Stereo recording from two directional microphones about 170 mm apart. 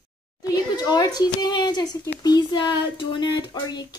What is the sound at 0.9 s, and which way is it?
Speech, 25° left (ahead or behind).